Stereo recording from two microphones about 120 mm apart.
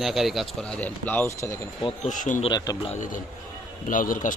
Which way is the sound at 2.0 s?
90° left.